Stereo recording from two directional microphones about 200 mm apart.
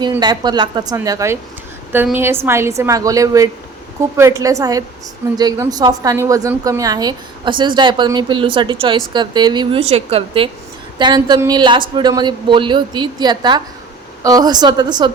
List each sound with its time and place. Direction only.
0.1 s a woman's voice: 20° right (ahead or behind)